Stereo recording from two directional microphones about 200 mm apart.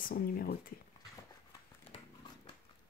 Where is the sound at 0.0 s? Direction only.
50° left (ahead or behind).